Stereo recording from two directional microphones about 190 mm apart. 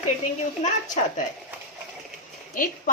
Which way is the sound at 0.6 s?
40° left (ahead or behind).